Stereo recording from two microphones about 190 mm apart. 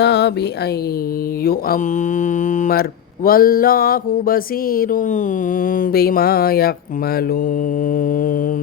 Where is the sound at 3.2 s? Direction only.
50° left (ahead or behind).